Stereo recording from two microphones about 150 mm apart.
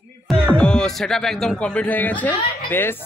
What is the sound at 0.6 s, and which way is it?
A man's voice, 5° left (ahead or behind).